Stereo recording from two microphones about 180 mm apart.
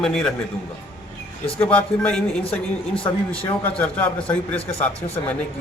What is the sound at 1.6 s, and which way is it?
A man's voice, 10° left (ahead or behind).